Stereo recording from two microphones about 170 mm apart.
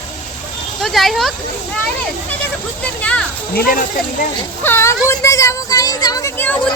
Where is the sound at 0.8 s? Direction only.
Centre (ahead or behind).